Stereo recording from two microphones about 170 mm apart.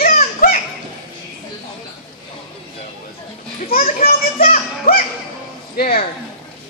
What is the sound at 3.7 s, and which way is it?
Children playing, 60° left (ahead or behind).